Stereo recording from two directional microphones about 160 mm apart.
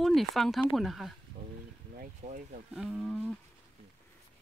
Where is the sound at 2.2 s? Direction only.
50° right (ahead or behind).